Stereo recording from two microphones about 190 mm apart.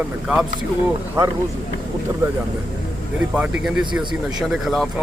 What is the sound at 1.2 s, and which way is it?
Speech, 15° right (ahead or behind).